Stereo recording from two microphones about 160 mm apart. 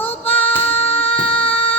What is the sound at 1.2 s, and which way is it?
Child singing, 35° left (ahead or behind).